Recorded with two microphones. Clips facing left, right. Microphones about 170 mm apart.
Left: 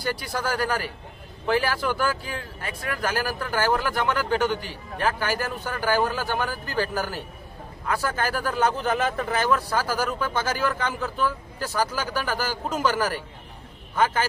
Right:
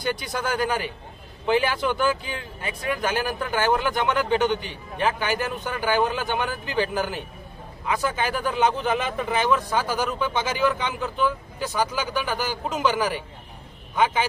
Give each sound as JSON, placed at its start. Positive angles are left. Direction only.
{"t": 0.0, "sound": "a man's voice", "side_deg": -20}